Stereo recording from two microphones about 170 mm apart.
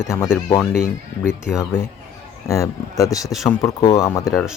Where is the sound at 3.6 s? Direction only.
20° left (ahead or behind).